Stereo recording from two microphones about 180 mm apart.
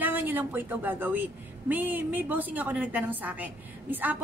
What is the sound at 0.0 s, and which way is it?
A woman's voice, 10° right (ahead or behind).